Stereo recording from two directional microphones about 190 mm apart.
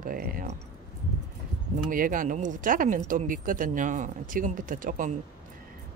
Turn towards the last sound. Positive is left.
turn(degrees=-45)  # may be behind; listen again after turning